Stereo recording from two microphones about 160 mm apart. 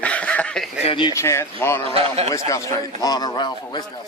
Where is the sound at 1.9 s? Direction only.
40° right (ahead or behind).